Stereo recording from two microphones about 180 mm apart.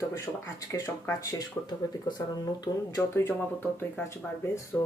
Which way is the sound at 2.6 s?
20° left (ahead or behind).